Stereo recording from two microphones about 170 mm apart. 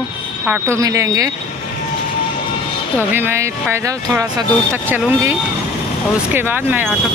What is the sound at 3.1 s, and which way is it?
Speech, 15° right (ahead or behind).